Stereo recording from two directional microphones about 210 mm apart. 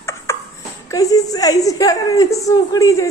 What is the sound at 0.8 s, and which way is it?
A woman's voice, 15° left (ahead or behind).